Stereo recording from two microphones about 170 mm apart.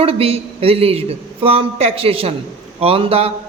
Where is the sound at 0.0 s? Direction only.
35° right (ahead or behind).